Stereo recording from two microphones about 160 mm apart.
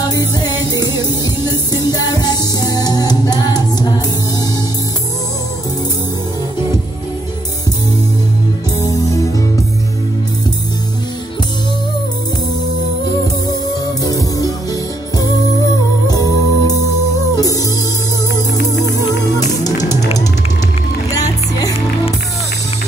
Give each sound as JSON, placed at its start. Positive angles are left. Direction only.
{"t": 0.0, "sound": "music", "side_deg": 25}
{"t": 8.7, "sound": "music", "side_deg": 20}
{"t": 14.0, "sound": "music", "side_deg": 20}
{"t": 19.6, "sound": "music", "side_deg": 20}
{"t": 21.1, "sound": "music", "side_deg": 20}